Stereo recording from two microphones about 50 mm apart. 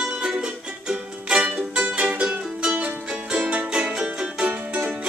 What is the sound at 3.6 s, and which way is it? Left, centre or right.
Music, centre.